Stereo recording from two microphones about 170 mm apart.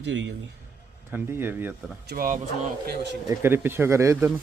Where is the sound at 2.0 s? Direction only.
55° right (ahead or behind).